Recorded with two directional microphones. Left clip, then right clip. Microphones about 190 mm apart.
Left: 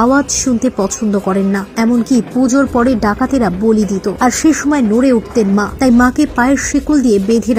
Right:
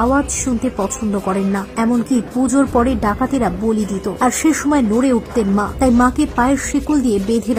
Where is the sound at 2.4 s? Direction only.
10° left (ahead or behind).